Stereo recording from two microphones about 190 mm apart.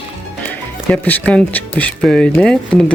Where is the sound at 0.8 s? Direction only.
10° left (ahead or behind).